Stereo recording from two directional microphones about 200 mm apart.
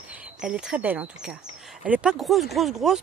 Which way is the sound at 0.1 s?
5° right (ahead or behind).